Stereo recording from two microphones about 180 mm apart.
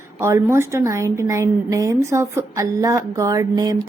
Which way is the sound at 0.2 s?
15° right (ahead or behind).